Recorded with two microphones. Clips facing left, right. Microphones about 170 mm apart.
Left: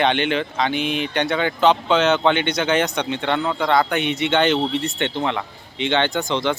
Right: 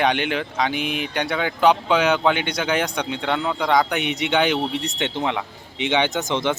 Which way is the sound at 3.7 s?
15° right (ahead or behind).